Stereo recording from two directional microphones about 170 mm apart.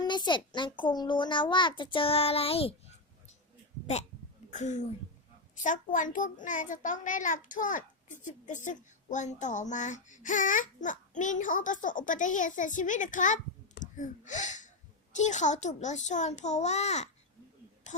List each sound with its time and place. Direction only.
0.0 s a child's voice: 25° left (ahead or behind)
4.5 s a child's voice: 45° left (ahead or behind)
17.9 s a sound: 45° left (ahead or behind)